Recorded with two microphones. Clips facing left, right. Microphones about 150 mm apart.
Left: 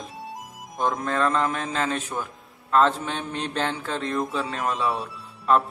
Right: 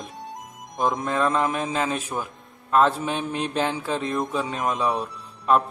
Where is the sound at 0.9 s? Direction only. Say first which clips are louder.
Even; 15° right (ahead or behind).